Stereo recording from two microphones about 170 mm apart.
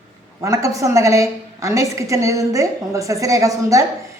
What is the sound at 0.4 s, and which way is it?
A woman's voice, 20° right (ahead or behind).